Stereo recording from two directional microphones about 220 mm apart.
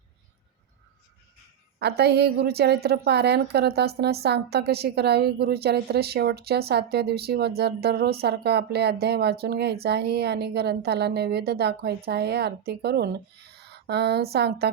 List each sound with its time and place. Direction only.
1.8 s a woman's voice: 50° right (ahead or behind)